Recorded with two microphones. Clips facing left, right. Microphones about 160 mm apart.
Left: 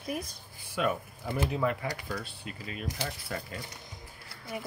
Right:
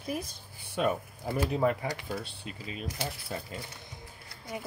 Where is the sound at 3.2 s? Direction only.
20° right (ahead or behind).